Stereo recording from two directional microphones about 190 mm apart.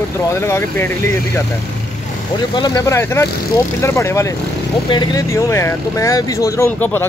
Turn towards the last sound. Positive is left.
turn(degrees=10)  # may be behind; listen again after turning